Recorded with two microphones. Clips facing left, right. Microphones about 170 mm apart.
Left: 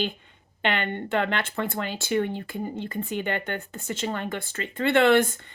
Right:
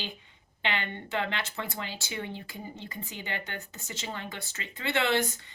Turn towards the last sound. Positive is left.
turn(degrees=55)  # may be behind; listen again after turning